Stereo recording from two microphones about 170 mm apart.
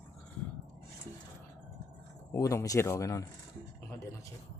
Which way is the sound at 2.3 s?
20° left (ahead or behind).